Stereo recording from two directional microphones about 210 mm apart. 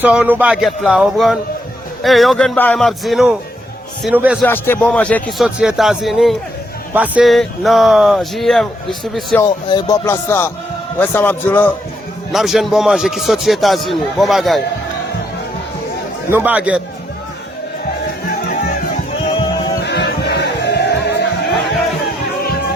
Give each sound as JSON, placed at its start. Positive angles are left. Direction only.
{"t": 0.0, "sound": "speech", "side_deg": -5}
{"t": 4.4, "sound": "speech", "side_deg": 10}
{"t": 9.4, "sound": "speech", "side_deg": 20}
{"t": 12.3, "sound": "speech", "side_deg": 0}
{"t": 16.3, "sound": "speech", "side_deg": -10}
{"t": 19.3, "sound": "music", "side_deg": 25}
{"t": 19.8, "sound": "music", "side_deg": 55}